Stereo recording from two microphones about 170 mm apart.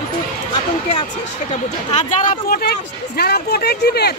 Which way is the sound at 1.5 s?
40° left (ahead or behind).